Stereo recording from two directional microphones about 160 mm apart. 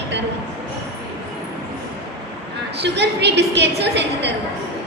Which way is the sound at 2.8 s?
90° right.